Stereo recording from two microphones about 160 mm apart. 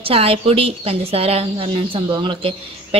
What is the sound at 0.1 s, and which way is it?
A woman's voice, 35° right (ahead or behind).